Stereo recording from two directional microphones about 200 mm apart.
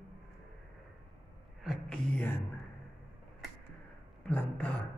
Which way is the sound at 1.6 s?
Centre (ahead or behind).